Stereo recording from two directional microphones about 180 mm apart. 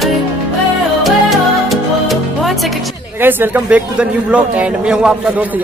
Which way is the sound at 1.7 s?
Centre (ahead or behind).